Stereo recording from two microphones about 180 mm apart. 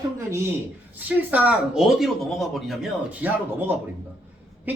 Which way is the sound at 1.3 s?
10° right (ahead or behind).